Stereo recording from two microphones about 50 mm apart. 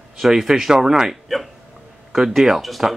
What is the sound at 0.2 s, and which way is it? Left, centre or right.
Speech, centre.